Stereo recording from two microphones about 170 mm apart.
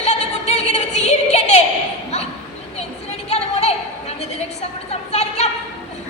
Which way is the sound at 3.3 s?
40° left (ahead or behind).